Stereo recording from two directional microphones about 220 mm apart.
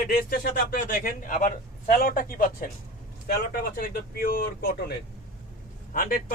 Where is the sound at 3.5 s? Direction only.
40° left (ahead or behind).